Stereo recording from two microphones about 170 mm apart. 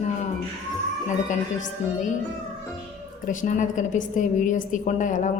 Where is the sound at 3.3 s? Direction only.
50° left (ahead or behind).